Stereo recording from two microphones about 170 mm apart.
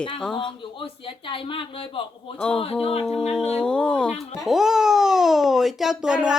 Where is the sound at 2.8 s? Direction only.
35° left (ahead or behind).